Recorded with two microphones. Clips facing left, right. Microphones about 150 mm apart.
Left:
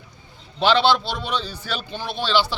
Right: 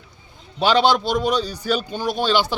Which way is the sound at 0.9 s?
45° right (ahead or behind).